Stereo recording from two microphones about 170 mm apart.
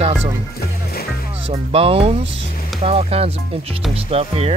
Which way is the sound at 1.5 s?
35° right (ahead or behind).